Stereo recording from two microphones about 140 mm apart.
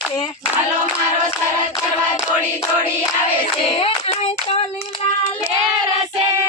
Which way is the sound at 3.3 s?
40° left (ahead or behind).